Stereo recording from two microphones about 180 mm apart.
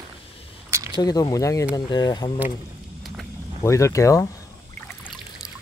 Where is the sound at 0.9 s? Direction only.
25° left (ahead or behind).